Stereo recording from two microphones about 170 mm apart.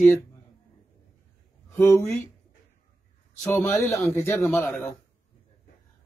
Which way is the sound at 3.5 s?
15° left (ahead or behind).